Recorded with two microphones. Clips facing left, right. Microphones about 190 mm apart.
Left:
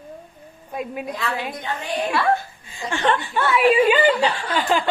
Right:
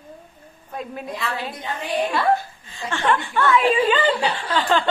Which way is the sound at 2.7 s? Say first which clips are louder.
Left 1 dB; 15° left (ahead or behind).